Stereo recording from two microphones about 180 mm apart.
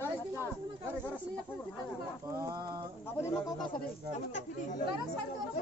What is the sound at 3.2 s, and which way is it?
Speech, 20° left (ahead or behind).